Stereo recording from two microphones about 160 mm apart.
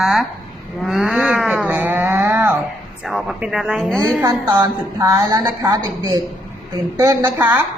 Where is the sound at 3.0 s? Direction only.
Centre (ahead or behind).